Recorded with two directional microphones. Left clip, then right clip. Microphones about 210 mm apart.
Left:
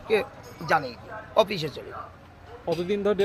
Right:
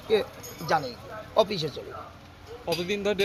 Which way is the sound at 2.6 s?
40° left (ahead or behind).